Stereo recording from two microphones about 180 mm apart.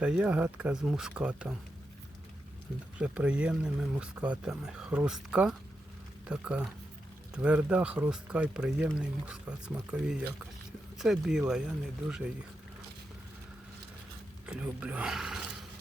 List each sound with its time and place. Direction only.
0.0 s speech: 10° right (ahead or behind)
3.0 s speech: 5° right (ahead or behind)
14.4 s speech: 5° right (ahead or behind)